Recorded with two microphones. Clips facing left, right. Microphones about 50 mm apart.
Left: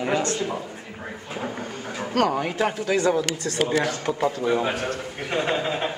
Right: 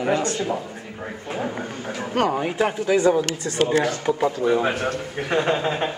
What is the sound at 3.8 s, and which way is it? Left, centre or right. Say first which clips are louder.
Speech: right 2 dB; centre.